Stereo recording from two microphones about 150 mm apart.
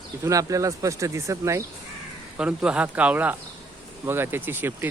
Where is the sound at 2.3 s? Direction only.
5° right (ahead or behind).